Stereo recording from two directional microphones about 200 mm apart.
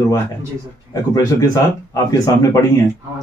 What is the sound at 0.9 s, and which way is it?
Speech, 15° left (ahead or behind).